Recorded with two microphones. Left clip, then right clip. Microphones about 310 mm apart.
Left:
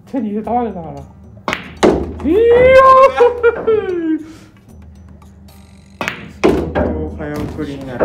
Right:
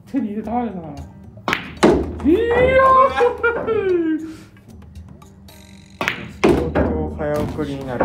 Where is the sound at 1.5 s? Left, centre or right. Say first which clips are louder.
Left 2 dB; centre.